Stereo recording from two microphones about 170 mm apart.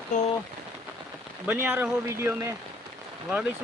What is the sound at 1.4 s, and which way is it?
A man's voice, 15° right (ahead or behind).